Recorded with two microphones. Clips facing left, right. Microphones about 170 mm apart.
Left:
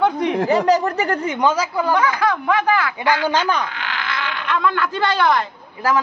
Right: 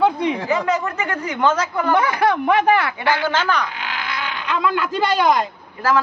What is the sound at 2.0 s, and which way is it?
Speech, 25° right (ahead or behind).